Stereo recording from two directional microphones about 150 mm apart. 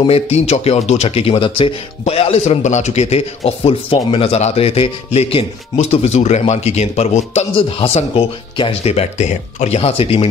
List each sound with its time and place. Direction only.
0.0 s speech: 45° left (ahead or behind)